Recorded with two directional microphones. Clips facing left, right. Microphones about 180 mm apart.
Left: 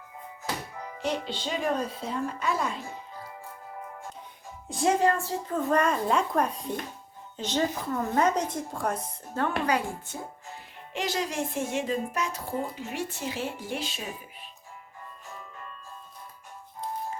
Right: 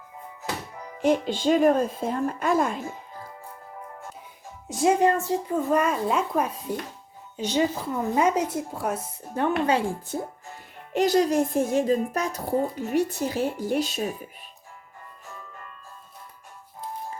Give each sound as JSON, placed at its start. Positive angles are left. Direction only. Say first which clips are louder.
{"t": 1.0, "sound": "speech", "louder": "right 9 dB", "side_deg": -50}
{"t": 4.9, "sound": "speech", "louder": "right 3 dB", "side_deg": -20}
{"t": 9.3, "sound": "speech", "louder": "right 4 dB", "side_deg": -20}
{"t": 10.9, "sound": "speech", "louder": "right 10 dB", "side_deg": -40}